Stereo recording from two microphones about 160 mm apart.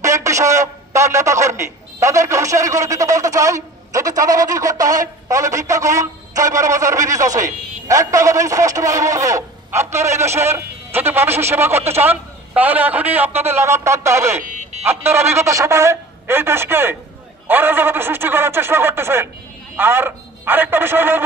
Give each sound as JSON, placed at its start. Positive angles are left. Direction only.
{"t": 0.0, "sound": "a man's voice", "side_deg": -20}
{"t": 14.5, "sound": "music", "side_deg": -50}
{"t": 14.8, "sound": "a man's voice", "side_deg": -15}